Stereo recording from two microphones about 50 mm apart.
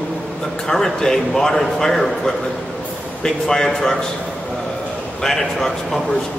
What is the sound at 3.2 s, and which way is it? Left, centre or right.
Speech, centre.